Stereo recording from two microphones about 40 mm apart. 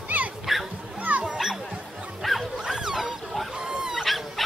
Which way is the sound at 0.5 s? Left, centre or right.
Centre.